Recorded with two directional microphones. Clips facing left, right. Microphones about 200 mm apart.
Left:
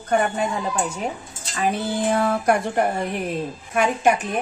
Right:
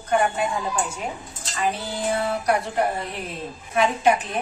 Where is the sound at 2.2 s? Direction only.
50° left (ahead or behind).